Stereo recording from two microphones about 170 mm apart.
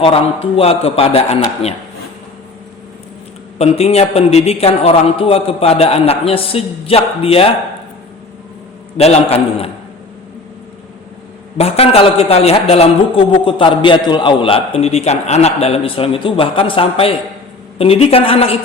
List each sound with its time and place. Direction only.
0.0 s a man's voice: 35° left (ahead or behind)
3.6 s a man's voice: 35° left (ahead or behind)
9.0 s a man's voice: 35° left (ahead or behind)
11.5 s a man's voice: 35° left (ahead or behind)